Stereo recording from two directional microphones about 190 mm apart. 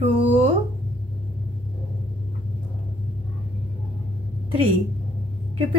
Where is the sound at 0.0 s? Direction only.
30° right (ahead or behind).